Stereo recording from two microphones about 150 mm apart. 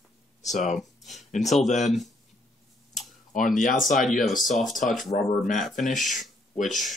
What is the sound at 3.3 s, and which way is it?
Speech, 65° left (ahead or behind).